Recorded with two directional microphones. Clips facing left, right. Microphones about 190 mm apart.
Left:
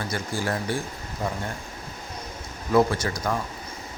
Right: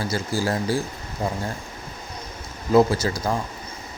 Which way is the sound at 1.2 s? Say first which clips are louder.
Right 3 dB; 30° right (ahead or behind).